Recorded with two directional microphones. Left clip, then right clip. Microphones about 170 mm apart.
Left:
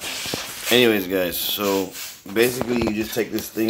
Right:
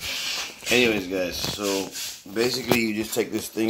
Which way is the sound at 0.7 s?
10° left (ahead or behind).